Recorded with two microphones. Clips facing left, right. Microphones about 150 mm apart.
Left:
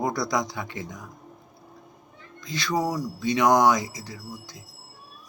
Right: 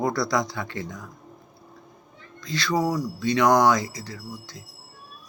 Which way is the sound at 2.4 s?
15° left (ahead or behind).